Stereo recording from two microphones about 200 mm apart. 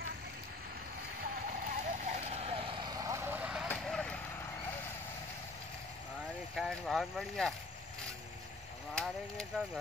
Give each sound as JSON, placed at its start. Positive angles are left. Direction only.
{"t": 1.2, "sound": "vehicle", "side_deg": -45}
{"t": 3.6, "sound": "vehicle", "side_deg": 5}
{"t": 6.5, "sound": "speech", "side_deg": 0}
{"t": 8.9, "sound": "speech", "side_deg": 5}